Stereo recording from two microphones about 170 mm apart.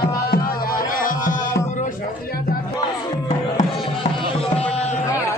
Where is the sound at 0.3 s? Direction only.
60° left (ahead or behind).